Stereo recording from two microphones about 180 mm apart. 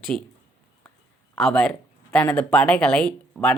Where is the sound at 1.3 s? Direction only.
5° left (ahead or behind).